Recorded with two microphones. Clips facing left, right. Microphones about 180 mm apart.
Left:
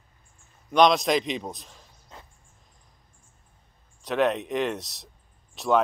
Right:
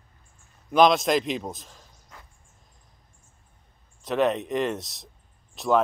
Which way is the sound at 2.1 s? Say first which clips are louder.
Left 3 dB; 25° left (ahead or behind).